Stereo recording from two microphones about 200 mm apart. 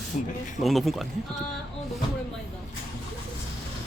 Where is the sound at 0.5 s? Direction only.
Centre (ahead or behind).